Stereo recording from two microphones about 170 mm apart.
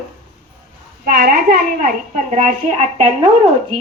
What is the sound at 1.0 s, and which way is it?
A woman's voice, 65° right (ahead or behind).